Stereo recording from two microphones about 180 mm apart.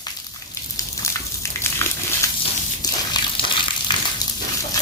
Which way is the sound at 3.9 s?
25° left (ahead or behind).